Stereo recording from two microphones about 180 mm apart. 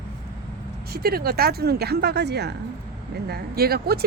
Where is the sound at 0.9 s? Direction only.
60° right (ahead or behind).